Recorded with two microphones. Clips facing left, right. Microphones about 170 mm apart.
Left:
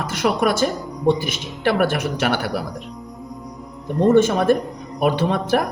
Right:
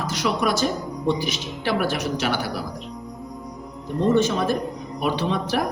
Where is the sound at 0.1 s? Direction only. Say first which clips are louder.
Left 4 dB; 55° left (ahead or behind).